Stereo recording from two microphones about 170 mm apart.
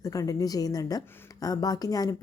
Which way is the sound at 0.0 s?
20° left (ahead or behind).